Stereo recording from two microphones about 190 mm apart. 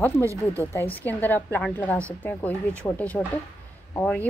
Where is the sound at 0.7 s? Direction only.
10° left (ahead or behind).